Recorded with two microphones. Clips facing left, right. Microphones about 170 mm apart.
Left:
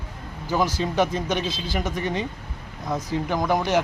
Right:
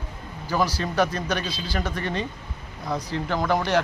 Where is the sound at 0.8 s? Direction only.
15° left (ahead or behind).